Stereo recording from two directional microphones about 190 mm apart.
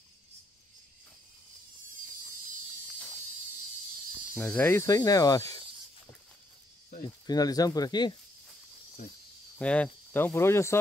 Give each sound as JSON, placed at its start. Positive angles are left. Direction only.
{"t": 4.3, "sound": "speech", "side_deg": 5}
{"t": 7.2, "sound": "speech", "side_deg": 20}
{"t": 9.6, "sound": "speech", "side_deg": 5}